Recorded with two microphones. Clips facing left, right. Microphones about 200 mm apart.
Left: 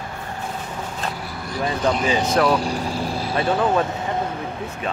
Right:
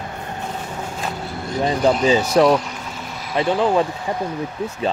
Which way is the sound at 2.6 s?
35° left (ahead or behind).